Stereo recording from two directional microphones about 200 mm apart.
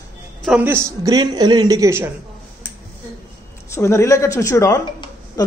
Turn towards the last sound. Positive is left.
turn(degrees=20)  # may be behind; listen again after turning